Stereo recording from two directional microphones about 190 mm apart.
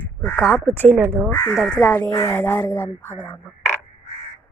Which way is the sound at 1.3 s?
10° left (ahead or behind).